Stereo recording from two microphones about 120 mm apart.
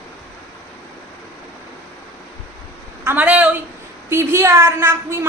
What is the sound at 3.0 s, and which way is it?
A woman's voice, 15° right (ahead or behind).